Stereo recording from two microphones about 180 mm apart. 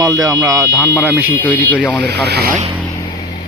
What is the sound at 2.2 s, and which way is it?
Speech, 65° right (ahead or behind).